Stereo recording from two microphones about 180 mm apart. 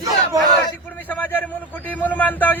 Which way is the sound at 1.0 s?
10° left (ahead or behind).